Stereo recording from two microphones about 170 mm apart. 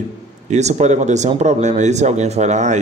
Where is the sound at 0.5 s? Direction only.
40° right (ahead or behind).